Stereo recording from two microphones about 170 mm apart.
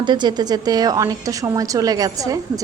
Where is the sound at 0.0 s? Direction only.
25° right (ahead or behind).